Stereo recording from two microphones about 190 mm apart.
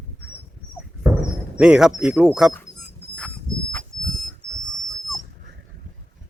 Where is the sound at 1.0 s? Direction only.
15° right (ahead or behind).